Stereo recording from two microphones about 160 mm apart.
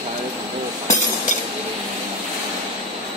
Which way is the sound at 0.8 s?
50° left (ahead or behind).